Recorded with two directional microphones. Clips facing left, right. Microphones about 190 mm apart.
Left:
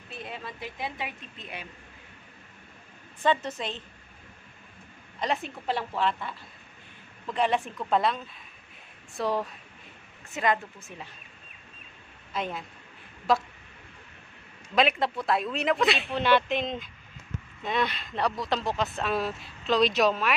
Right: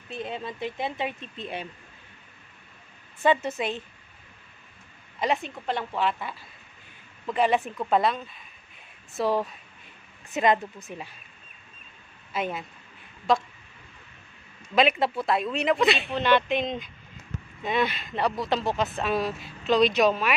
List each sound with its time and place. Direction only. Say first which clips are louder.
0.2 s a woman's voice: right 7 dB; 25° right (ahead or behind)
3.2 s speech: right 3 dB; 10° right (ahead or behind)
5.2 s speech: right 3 dB; centre (ahead or behind)
10.3 s speech: right 4 dB; 20° right (ahead or behind)
12.3 s speech: right 3 dB; 5° right (ahead or behind)
14.8 s speech: right 2 dB; 5° right (ahead or behind)